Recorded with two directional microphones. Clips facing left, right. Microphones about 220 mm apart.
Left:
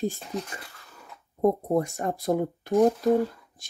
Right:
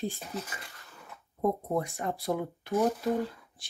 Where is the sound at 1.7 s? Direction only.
45° left (ahead or behind).